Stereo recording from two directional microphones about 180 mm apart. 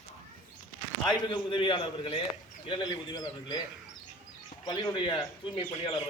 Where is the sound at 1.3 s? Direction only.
30° left (ahead or behind).